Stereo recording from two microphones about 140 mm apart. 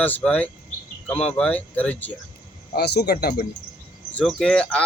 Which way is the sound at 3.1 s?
90° left.